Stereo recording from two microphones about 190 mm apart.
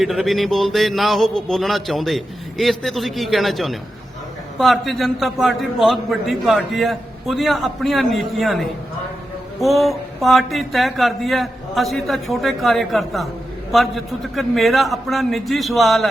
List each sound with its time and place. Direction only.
0.0 s a man's voice: centre (ahead or behind)